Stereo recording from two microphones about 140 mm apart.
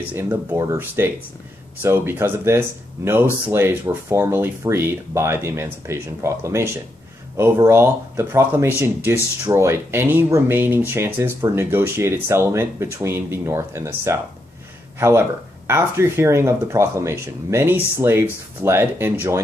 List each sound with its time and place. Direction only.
0.1 s speech: 15° right (ahead or behind)